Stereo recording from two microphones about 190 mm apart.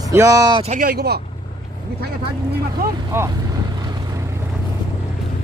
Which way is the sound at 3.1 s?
15° right (ahead or behind).